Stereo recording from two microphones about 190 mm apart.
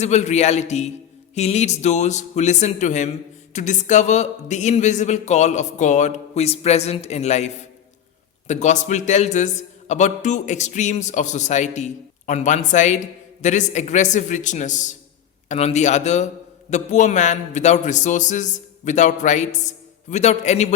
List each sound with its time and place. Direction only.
0.0 s a man's voice: 35° left (ahead or behind)